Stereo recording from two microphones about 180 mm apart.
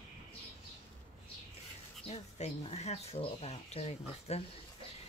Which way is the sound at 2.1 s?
35° left (ahead or behind).